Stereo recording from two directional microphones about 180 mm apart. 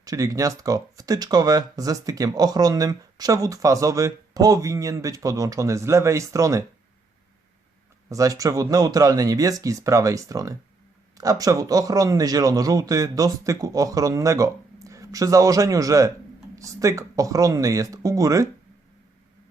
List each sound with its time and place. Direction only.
0.0 s speech: 20° right (ahead or behind)
8.1 s speech: 20° right (ahead or behind)